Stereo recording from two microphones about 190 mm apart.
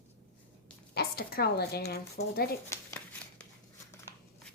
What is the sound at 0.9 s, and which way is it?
Speech, 55° left (ahead or behind).